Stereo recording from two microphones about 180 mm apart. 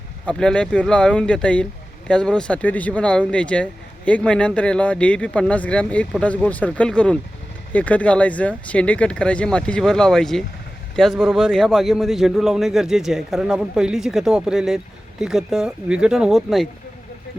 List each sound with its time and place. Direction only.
0.3 s a man's voice: 5° left (ahead or behind)